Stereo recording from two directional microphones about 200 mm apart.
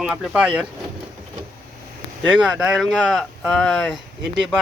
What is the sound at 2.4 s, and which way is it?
Speech, 5° right (ahead or behind).